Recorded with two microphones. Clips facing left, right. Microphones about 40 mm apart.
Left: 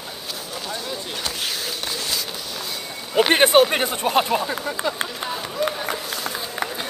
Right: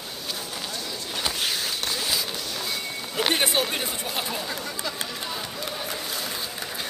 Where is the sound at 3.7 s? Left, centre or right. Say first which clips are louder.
Left 9 dB; left.